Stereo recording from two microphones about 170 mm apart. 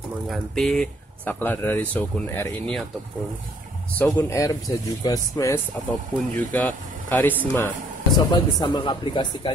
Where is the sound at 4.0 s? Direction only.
15° left (ahead or behind).